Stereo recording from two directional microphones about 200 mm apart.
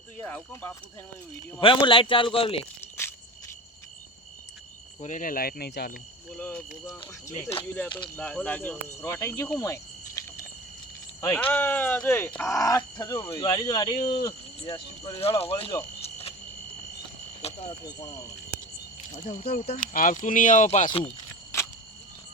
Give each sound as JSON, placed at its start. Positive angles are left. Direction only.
{"t": 0.2, "sound": "speech", "side_deg": 10}
{"t": 1.6, "sound": "speech", "side_deg": 25}
{"t": 4.9, "sound": "speech", "side_deg": 40}
{"t": 6.4, "sound": "speech", "side_deg": 10}
{"t": 17.4, "sound": "speech", "side_deg": 20}
{"t": 19.1, "sound": "speech", "side_deg": 35}